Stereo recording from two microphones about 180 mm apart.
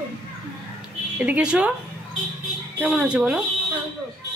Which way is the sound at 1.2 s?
5° right (ahead or behind).